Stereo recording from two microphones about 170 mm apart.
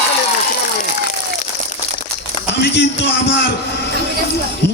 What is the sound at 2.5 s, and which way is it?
Speech, 90° left.